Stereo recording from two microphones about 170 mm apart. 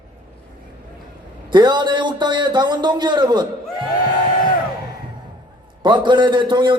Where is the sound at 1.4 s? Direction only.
25° right (ahead or behind).